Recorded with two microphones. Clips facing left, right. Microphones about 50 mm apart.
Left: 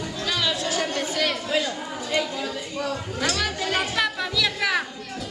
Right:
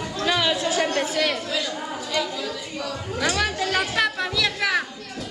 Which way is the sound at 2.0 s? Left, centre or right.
Centre.